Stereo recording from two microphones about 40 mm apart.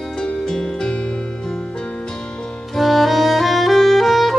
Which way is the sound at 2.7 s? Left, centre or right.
Centre.